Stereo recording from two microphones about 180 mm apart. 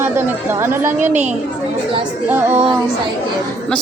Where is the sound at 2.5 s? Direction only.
30° right (ahead or behind).